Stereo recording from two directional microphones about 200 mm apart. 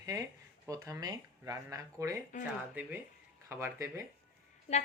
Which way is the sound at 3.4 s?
15° right (ahead or behind).